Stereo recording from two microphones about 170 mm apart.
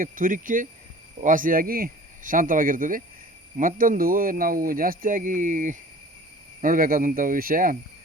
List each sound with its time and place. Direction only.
0.0 s speech: 55° right (ahead or behind)